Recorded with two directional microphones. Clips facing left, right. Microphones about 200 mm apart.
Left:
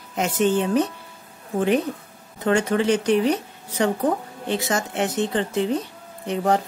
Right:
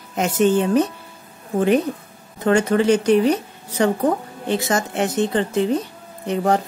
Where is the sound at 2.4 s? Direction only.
45° right (ahead or behind).